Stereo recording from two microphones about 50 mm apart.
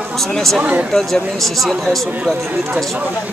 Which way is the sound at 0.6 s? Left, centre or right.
Right.